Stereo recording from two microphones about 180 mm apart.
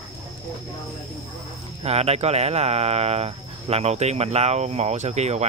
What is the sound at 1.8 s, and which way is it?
Speech, 35° right (ahead or behind).